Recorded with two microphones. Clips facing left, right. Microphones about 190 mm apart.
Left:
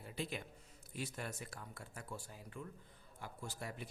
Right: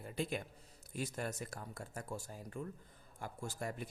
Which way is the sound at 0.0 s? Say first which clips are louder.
Right 4 dB; 45° right (ahead or behind).